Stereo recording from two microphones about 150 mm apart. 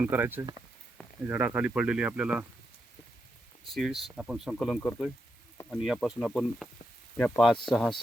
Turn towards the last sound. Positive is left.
turn(degrees=5)  # may be behind; listen again after turning